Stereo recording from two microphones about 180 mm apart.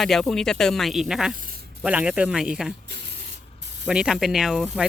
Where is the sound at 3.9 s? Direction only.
5° right (ahead or behind).